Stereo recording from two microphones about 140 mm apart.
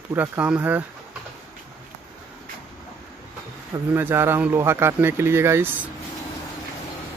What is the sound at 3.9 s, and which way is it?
Speech, 15° right (ahead or behind).